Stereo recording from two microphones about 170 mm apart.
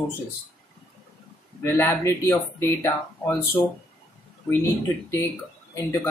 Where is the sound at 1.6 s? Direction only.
15° left (ahead or behind).